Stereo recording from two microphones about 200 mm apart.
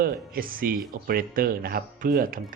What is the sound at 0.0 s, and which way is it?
Speech, 45° right (ahead or behind).